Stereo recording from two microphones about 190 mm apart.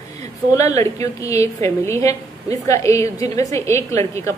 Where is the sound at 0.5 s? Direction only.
15° left (ahead or behind).